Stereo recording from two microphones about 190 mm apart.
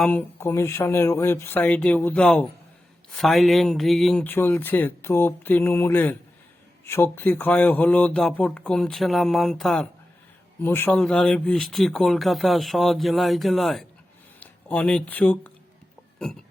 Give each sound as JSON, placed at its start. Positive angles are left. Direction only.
{"t": 0.0, "sound": "speech", "side_deg": 10}